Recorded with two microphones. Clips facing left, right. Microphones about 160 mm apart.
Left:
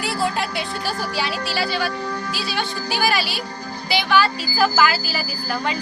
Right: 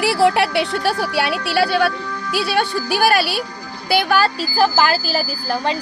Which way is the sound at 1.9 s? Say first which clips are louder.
Left 1 dB; 40° left (ahead or behind).